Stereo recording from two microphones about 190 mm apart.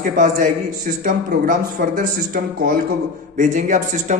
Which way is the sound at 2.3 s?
50° right (ahead or behind).